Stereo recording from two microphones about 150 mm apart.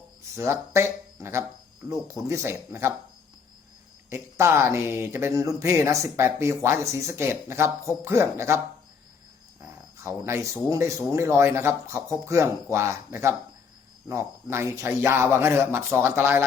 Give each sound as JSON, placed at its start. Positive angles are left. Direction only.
{"t": 0.3, "sound": "speech", "side_deg": -20}
{"t": 4.1, "sound": "speech", "side_deg": -15}